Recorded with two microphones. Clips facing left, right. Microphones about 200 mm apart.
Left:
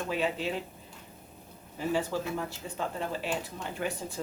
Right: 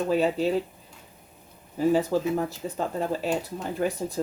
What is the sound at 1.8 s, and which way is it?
Speech, 40° right (ahead or behind).